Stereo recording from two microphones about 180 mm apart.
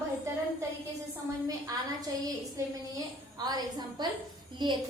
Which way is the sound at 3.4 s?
20° right (ahead or behind).